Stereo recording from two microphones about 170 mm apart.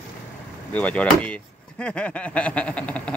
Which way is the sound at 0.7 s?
10° left (ahead or behind).